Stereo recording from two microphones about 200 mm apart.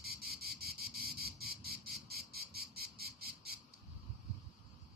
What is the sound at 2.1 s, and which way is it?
Chicken, 50° right (ahead or behind).